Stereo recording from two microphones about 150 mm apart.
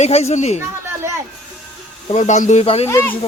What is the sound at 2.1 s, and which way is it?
Speech, 50° left (ahead or behind).